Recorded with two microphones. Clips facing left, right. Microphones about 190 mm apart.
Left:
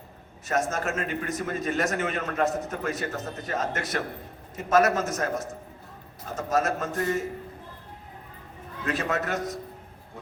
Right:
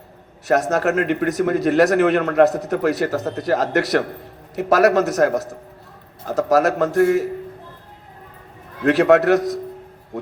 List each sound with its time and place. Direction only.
0.4 s a man's voice: 70° right (ahead or behind)
8.8 s a man's voice: 70° right (ahead or behind)